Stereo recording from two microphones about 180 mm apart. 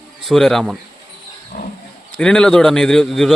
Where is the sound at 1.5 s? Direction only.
50° left (ahead or behind).